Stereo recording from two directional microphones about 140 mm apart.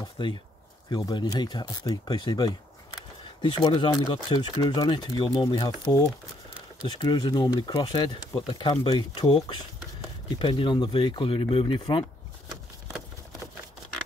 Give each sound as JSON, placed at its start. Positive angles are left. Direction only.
{"t": 0.2, "sound": "speech", "side_deg": 35}
{"t": 3.6, "sound": "speech", "side_deg": 35}